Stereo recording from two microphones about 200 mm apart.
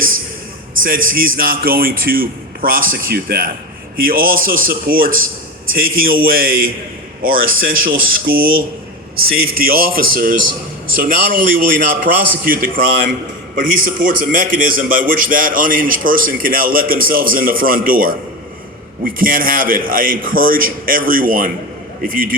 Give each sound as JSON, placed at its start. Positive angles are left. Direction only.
{"t": 0.8, "sound": "a man's voice", "side_deg": -45}